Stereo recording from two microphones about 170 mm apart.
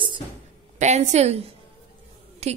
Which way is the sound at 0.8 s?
45° right (ahead or behind).